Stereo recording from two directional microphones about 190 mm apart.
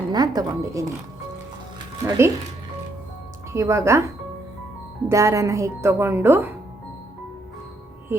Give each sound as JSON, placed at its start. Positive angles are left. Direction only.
{"t": 0.1, "sound": "speech", "side_deg": -20}
{"t": 2.0, "sound": "speech", "side_deg": -15}
{"t": 3.5, "sound": "speech", "side_deg": -15}
{"t": 5.0, "sound": "speech", "side_deg": -15}